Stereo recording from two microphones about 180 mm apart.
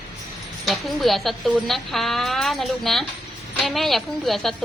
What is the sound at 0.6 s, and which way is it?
A woman's voice, centre (ahead or behind).